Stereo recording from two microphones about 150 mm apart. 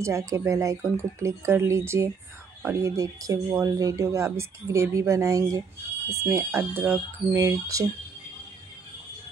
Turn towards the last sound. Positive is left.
turn(degrees=-20)  # may be behind; listen again after turning